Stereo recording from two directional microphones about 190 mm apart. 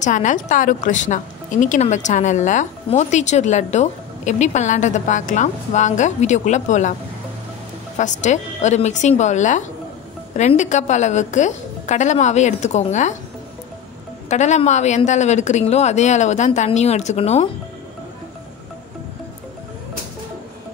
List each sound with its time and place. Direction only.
0.0 s a woman's voice: 40° left (ahead or behind)
8.0 s a woman's voice: 40° left (ahead or behind)
14.3 s a woman's voice: 40° left (ahead or behind)